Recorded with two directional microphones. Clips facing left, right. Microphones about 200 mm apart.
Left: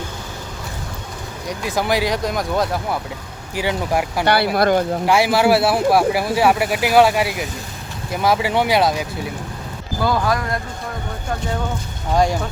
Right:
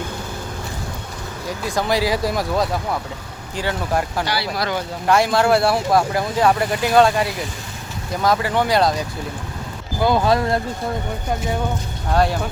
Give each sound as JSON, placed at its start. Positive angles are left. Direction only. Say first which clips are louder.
{"t": 1.5, "sound": "speech", "louder": "left 1 dB", "side_deg": 5}
{"t": 3.5, "sound": "speech", "louder": "left 2 dB", "side_deg": 10}
{"t": 4.3, "sound": "speech", "louder": "left 7 dB", "side_deg": 55}
{"t": 5.0, "sound": "speech", "louder": "right 1 dB", "side_deg": 10}
{"t": 10.0, "sound": "speech", "louder": "right 3 dB", "side_deg": -20}
{"t": 12.1, "sound": "speech", "louder": "left 1 dB", "side_deg": 15}